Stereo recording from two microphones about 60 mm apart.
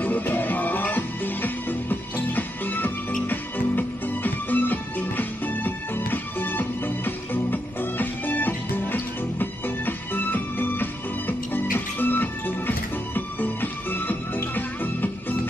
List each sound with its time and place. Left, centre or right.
0.0 s music: left